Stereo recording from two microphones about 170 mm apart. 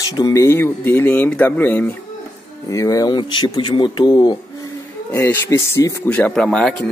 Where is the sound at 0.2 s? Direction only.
20° left (ahead or behind).